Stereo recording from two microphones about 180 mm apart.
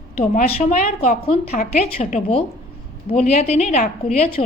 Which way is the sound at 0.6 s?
40° left (ahead or behind).